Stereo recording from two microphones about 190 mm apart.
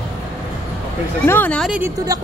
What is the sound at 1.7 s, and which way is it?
Speech, 15° right (ahead or behind).